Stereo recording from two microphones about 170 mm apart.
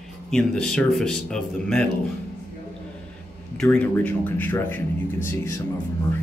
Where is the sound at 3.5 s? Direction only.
5° left (ahead or behind).